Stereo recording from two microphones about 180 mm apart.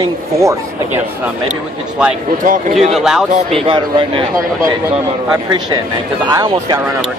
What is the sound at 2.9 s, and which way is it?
Speech, centre (ahead or behind).